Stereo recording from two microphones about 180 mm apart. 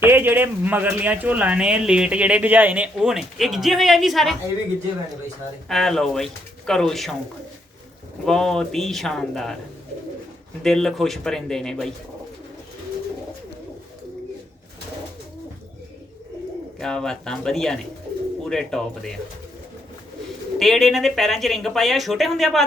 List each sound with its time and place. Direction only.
0.0 s speech: 10° right (ahead or behind)
5.6 s speech: centre (ahead or behind)
8.2 s speech: 5° left (ahead or behind)
10.6 s speech: centre (ahead or behind)
16.8 s speech: 5° left (ahead or behind)
20.6 s speech: centre (ahead or behind)